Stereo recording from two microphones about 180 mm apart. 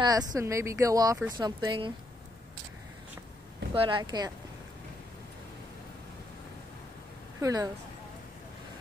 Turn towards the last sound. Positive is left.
turn(degrees=-20)  # may be behind; listen again after turning